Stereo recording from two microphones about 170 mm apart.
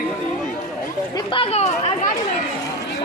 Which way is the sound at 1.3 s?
35° left (ahead or behind).